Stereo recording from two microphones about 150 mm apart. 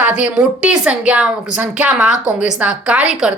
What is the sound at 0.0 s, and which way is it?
Speech, 10° right (ahead or behind).